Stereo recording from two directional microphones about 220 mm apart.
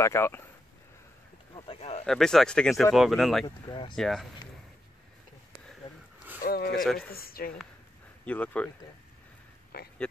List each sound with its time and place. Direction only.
0.0 s speech: 10° left (ahead or behind)
1.5 s a sound: 25° left (ahead or behind)
2.0 s speech: centre (ahead or behind)
3.4 s speech: 20° left (ahead or behind)
3.9 s speech: centre (ahead or behind)
6.4 s speech: 45° left (ahead or behind)
6.7 s speech: centre (ahead or behind)
7.1 s speech: 45° left (ahead or behind)
8.3 s speech: 5° left (ahead or behind)
9.7 s speech: 45° left (ahead or behind)